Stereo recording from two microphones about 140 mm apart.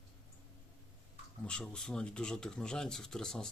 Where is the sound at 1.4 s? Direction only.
5° left (ahead or behind).